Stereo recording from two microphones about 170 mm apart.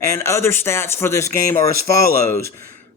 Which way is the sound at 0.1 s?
15° left (ahead or behind).